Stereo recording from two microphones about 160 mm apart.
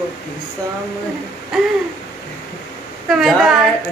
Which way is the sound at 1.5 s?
Centre (ahead or behind).